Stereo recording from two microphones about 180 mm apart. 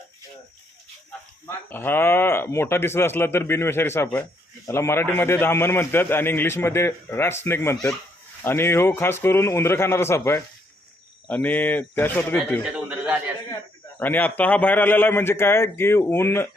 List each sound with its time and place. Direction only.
1.5 s speech: 10° left (ahead or behind)
12.6 s a sound: 5° right (ahead or behind)
14.0 s speech: 10° left (ahead or behind)